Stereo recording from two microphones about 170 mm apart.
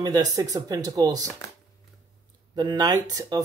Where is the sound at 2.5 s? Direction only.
25° right (ahead or behind).